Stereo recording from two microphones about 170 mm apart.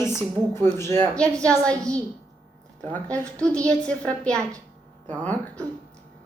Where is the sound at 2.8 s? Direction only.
10° left (ahead or behind).